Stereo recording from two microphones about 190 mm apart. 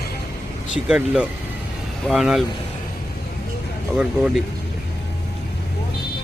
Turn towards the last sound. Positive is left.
turn(degrees=-5)  # may be behind; listen again after turning